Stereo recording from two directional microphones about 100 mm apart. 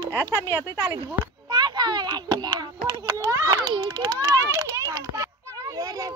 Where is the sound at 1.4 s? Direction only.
45° right (ahead or behind).